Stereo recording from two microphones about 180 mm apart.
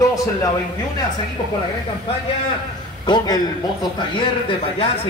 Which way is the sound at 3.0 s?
25° left (ahead or behind).